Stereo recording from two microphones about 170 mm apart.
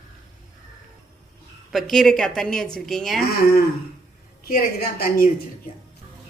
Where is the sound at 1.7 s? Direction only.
Centre (ahead or behind).